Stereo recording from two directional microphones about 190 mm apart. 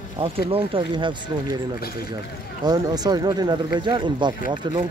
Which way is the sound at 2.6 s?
20° right (ahead or behind).